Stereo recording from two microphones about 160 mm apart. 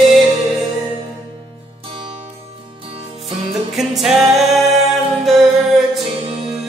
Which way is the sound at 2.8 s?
35° right (ahead or behind).